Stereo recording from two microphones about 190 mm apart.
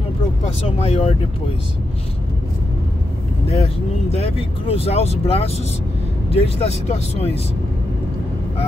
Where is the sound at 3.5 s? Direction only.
30° left (ahead or behind).